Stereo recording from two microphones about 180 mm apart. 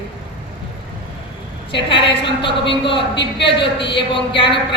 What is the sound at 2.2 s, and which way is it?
A woman's voice, 30° left (ahead or behind).